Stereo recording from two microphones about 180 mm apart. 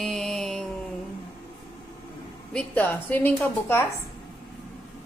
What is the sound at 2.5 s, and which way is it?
A woman's voice, 10° left (ahead or behind).